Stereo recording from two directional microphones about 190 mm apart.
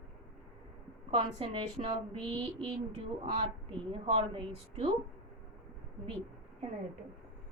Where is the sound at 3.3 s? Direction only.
30° right (ahead or behind).